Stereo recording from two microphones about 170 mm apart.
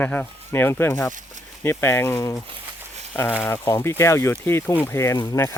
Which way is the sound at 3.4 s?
15° left (ahead or behind).